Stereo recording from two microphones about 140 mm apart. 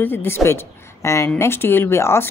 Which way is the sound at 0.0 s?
15° left (ahead or behind).